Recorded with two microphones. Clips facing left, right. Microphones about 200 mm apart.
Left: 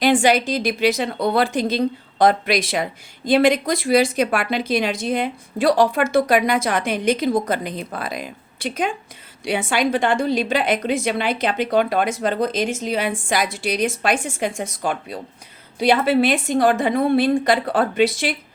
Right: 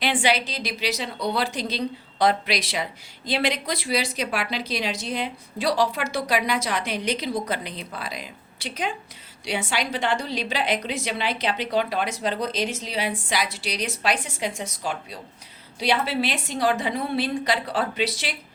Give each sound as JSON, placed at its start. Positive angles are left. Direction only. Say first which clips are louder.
{"t": 0.0, "sound": "a woman's voice", "louder": "left 7 dB", "side_deg": 45}